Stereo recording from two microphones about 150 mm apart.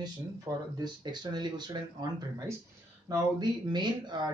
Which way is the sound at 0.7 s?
30° right (ahead or behind).